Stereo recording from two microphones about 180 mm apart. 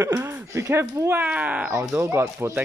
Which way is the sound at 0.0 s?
15° right (ahead or behind).